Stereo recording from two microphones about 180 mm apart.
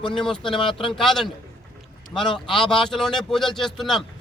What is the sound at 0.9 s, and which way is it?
Speech, centre (ahead or behind).